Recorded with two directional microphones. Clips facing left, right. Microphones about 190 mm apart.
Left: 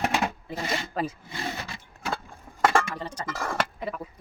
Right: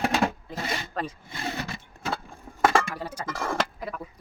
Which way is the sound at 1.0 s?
5° left (ahead or behind).